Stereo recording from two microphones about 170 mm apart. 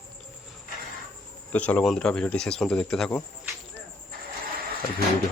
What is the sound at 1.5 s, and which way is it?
Speech, 10° left (ahead or behind).